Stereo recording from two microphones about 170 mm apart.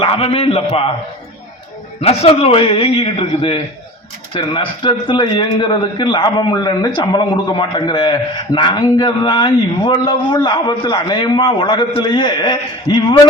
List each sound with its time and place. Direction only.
0.0 s a man's voice: 35° left (ahead or behind)
2.0 s a man's voice: 35° left (ahead or behind)